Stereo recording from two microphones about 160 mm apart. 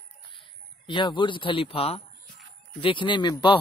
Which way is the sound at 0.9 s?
30° left (ahead or behind).